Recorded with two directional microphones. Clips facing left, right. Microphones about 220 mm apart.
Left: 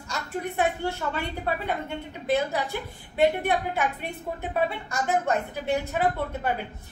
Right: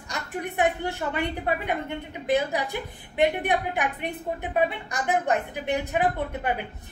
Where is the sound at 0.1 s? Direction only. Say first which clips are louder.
Left 1 dB; 15° right (ahead or behind).